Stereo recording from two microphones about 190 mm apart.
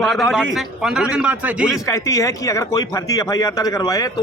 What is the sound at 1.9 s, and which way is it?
A man's voice, 15° left (ahead or behind).